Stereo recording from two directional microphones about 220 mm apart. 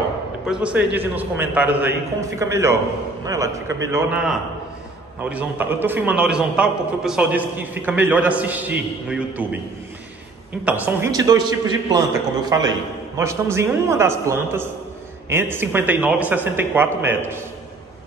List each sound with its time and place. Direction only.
0.5 s a man's voice: 5° right (ahead or behind)
10.6 s a man's voice: 5° right (ahead or behind)